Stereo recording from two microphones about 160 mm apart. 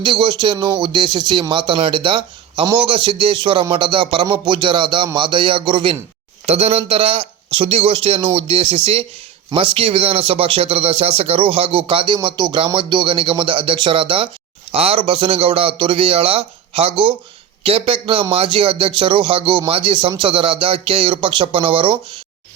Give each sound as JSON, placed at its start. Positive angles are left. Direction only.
{"t": 0.0, "sound": "speech", "side_deg": -30}